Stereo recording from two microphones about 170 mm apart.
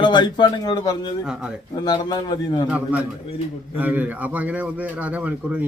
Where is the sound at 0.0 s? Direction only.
25° left (ahead or behind).